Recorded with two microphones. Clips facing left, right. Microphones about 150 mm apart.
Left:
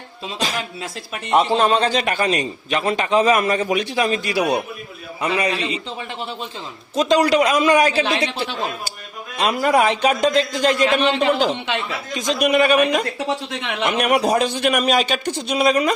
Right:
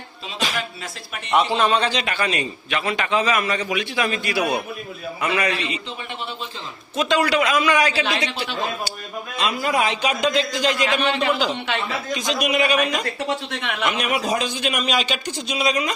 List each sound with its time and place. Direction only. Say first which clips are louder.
0.3 s a man's voice: left 1 dB; 40° left (ahead or behind)
6.9 s a man's voice: left 4 dB; 35° left (ahead or behind)
8.1 s speech: left 4 dB; 25° left (ahead or behind)
9.4 s a man's voice: left 5 dB; 60° left (ahead or behind)
10.2 s a man's voice: left 3 dB; 45° left (ahead or behind)
13.1 s speech: left 2 dB; 20° left (ahead or behind)
14.2 s a man's voice: left 5 dB; 65° left (ahead or behind)
14.9 s a man's voice: left 4 dB; 50° left (ahead or behind)